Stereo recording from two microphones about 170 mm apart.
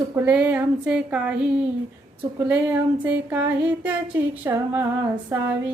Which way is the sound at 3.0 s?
15° right (ahead or behind).